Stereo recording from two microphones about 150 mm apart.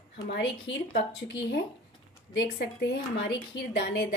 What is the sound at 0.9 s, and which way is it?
Speech, 90° left.